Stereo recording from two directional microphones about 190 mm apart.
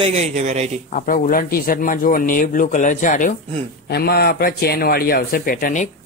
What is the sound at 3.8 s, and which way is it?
Speech, 55° left (ahead or behind).